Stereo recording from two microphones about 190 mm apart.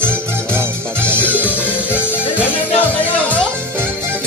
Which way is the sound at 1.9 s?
5° right (ahead or behind).